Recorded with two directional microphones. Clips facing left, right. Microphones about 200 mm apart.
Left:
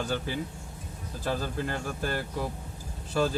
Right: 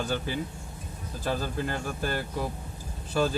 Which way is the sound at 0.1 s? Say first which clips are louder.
Right 1 dB; 15° right (ahead or behind).